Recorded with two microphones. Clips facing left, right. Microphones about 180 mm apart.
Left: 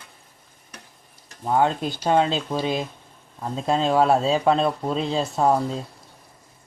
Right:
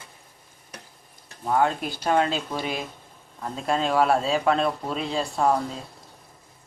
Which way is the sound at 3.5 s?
25° left (ahead or behind).